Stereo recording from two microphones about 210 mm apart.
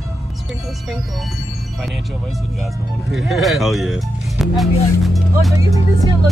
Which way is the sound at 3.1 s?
Centre (ahead or behind).